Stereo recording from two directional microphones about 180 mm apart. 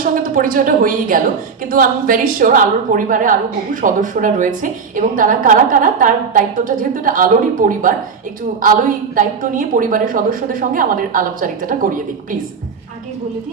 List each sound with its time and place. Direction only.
0.0 s a woman's voice: 50° right (ahead or behind)